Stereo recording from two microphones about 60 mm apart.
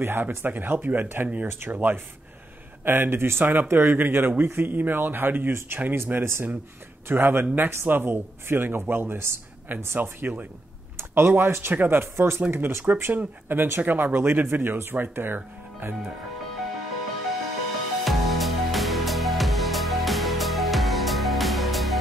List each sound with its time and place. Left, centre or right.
0.0 s speech: right
18.0 s music: centre